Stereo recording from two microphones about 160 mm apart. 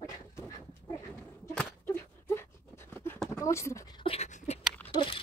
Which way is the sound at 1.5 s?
10° left (ahead or behind).